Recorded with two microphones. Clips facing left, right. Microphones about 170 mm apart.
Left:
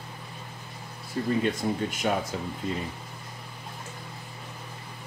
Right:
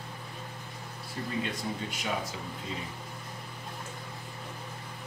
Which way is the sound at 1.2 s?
40° left (ahead or behind).